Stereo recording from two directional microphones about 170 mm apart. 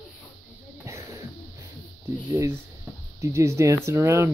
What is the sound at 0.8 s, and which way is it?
Cough, 15° right (ahead or behind).